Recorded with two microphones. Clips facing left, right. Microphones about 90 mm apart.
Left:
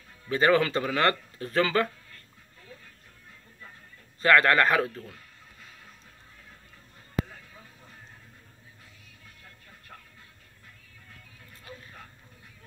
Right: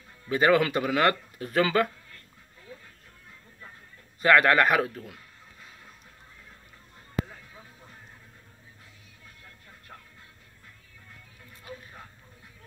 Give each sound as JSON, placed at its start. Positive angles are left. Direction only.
{"t": 0.3, "sound": "speech", "side_deg": -10}
{"t": 4.2, "sound": "speech", "side_deg": -10}
{"t": 7.2, "sound": "a sound", "side_deg": -10}